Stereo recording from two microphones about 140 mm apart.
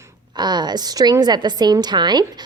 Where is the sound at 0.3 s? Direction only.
30° right (ahead or behind).